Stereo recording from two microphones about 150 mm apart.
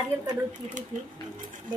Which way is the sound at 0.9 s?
55° right (ahead or behind).